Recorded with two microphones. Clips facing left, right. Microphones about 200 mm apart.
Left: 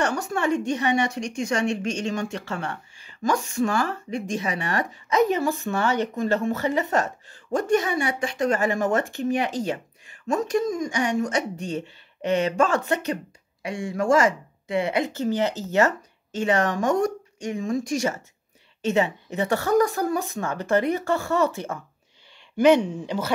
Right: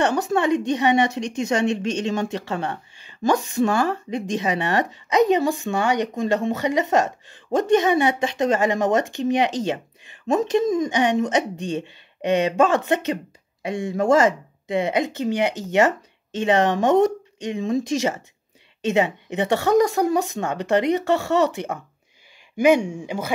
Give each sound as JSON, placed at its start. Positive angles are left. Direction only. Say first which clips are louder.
{"t": 0.0, "sound": "a woman's voice", "louder": "right 4 dB", "side_deg": -20}
{"t": 21.1, "sound": "speech", "louder": "right 3 dB", "side_deg": -75}
{"t": 21.5, "sound": "speech", "louder": "right 2 dB", "side_deg": -20}